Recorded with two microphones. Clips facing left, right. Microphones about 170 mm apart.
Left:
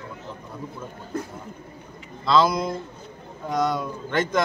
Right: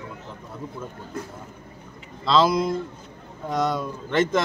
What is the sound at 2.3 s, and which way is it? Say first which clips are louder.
A man's voice: right 1 dB; centre (ahead or behind).